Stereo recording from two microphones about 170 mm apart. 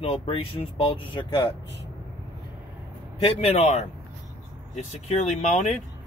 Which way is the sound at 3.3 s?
35° left (ahead or behind).